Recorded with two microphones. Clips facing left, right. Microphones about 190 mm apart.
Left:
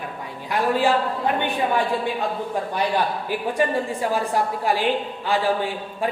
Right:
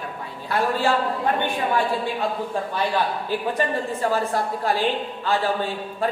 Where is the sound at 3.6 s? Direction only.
15° left (ahead or behind).